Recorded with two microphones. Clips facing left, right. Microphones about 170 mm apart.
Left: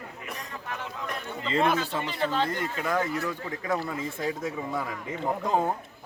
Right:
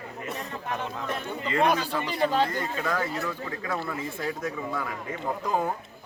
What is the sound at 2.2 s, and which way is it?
Speech, 10° right (ahead or behind).